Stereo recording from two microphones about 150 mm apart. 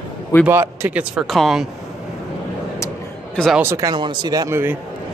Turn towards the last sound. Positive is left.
turn(degrees=-15)  # may be behind; listen again after turning